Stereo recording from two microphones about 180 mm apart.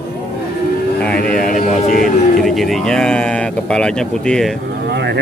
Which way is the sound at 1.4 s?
50° left (ahead or behind).